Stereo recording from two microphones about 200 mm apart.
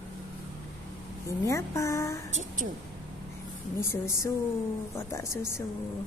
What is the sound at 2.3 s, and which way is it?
Speech, 40° right (ahead or behind).